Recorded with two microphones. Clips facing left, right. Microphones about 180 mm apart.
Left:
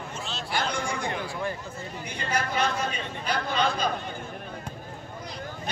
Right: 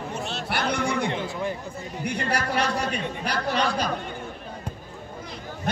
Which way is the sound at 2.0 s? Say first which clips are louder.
Right 4 dB; 70° right (ahead or behind).